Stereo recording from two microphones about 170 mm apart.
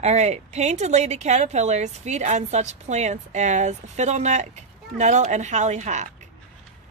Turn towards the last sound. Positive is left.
turn(degrees=-45)  # may be behind; listen again after turning